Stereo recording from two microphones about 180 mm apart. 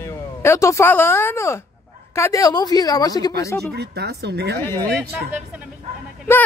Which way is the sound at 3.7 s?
65° right (ahead or behind).